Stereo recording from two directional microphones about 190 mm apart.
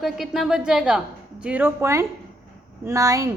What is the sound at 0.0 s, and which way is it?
A woman's voice, centre (ahead or behind).